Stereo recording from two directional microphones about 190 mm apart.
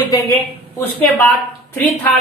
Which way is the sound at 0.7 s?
10° left (ahead or behind).